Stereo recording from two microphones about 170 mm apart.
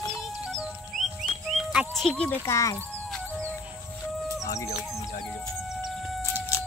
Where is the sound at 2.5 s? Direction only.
20° left (ahead or behind).